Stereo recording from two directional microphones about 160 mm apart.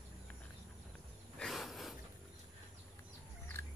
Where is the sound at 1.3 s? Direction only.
Centre (ahead or behind).